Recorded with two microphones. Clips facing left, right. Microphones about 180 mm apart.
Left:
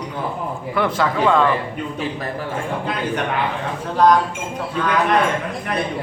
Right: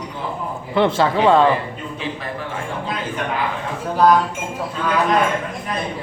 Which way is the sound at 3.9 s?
5° right (ahead or behind).